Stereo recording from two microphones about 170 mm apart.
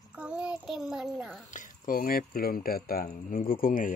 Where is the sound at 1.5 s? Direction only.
50° left (ahead or behind).